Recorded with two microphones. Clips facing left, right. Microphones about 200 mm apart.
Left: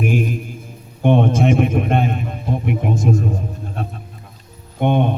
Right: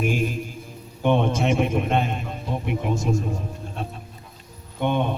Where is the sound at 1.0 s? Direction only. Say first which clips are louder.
Left 5 dB; 50° left (ahead or behind).